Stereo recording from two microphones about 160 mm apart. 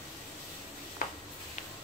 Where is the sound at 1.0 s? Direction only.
60° left (ahead or behind).